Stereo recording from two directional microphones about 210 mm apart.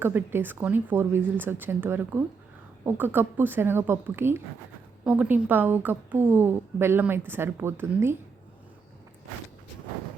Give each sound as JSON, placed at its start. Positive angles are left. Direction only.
{"t": 0.0, "sound": "a woman's voice", "side_deg": -10}